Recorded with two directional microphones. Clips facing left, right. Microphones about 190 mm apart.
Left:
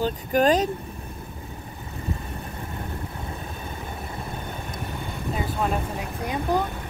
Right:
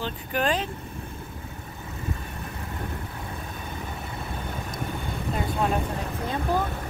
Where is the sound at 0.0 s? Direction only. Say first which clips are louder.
Left 6 dB; 40° left (ahead or behind).